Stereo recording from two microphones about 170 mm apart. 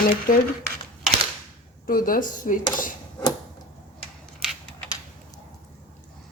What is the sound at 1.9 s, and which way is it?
Speech, 55° left (ahead or behind).